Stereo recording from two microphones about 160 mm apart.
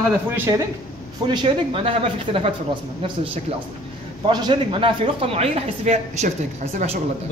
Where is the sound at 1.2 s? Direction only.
30° right (ahead or behind).